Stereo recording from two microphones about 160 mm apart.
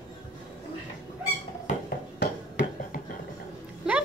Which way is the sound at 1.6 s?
65° left (ahead or behind).